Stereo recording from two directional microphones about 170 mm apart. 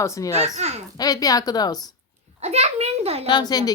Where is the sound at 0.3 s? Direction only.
40° right (ahead or behind).